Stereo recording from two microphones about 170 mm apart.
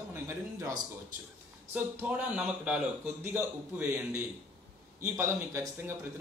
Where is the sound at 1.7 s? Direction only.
10° right (ahead or behind).